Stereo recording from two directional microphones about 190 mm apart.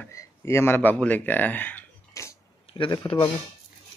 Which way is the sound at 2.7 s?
25° left (ahead or behind).